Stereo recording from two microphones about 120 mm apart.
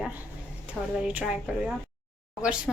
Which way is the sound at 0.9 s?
10° right (ahead or behind).